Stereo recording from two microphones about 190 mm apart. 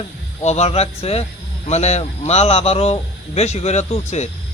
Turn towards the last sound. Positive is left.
turn(degrees=35)  # may be behind; listen again after turning